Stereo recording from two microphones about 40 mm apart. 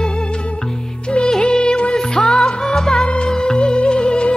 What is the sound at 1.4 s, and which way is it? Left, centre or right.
Music, left.